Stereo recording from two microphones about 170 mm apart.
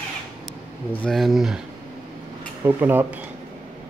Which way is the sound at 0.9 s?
5° left (ahead or behind).